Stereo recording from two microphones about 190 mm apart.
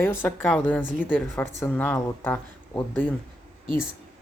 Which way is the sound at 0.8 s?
5° right (ahead or behind).